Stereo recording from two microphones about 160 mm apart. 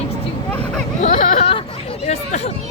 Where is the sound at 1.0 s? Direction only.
50° left (ahead or behind).